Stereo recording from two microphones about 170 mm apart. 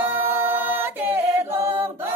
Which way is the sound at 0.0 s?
10° right (ahead or behind).